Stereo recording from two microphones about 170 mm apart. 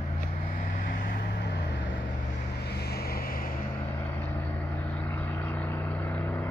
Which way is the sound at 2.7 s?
70° left (ahead or behind).